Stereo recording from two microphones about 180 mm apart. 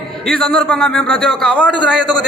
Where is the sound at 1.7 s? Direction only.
25° left (ahead or behind).